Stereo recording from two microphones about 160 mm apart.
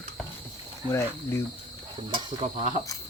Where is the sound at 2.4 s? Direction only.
55° right (ahead or behind).